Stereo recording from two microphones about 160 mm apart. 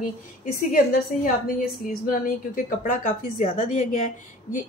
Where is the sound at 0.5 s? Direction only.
60° left (ahead or behind).